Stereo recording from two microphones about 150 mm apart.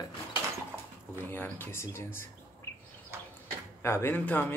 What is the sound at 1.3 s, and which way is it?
Speech, 15° left (ahead or behind).